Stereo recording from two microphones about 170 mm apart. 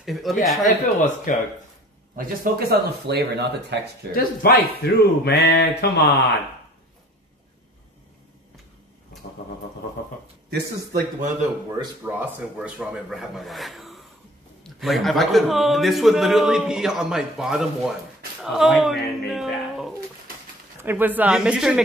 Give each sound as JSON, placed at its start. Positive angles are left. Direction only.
{"t": 0.0, "sound": "a man's voice", "side_deg": 0}
{"t": 0.7, "sound": "speech", "side_deg": 45}
{"t": 2.1, "sound": "speech", "side_deg": -60}
{"t": 4.1, "sound": "speech", "side_deg": 60}
{"t": 4.8, "sound": "mantra", "side_deg": 70}
{"t": 10.5, "sound": "speech", "side_deg": -65}
{"t": 12.0, "sound": "a man's voice", "side_deg": -10}